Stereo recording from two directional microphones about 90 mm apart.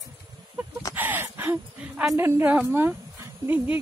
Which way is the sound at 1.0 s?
20° right (ahead or behind).